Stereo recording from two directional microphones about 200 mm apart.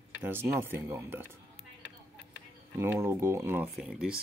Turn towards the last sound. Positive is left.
turn(degrees=-5)  # may be behind; listen again after turning